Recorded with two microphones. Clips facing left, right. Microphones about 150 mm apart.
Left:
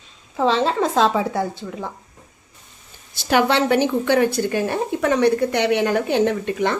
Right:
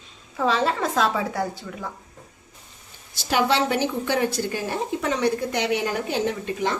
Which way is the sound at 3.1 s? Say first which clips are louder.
Left 4 dB; 60° left (ahead or behind).